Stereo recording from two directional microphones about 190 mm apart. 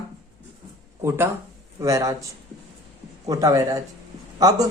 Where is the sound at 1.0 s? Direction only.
15° right (ahead or behind).